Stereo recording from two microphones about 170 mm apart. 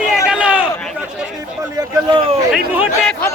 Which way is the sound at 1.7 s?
30° right (ahead or behind).